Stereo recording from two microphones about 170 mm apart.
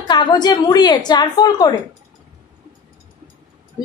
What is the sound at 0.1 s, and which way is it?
A woman's voice, 25° left (ahead or behind).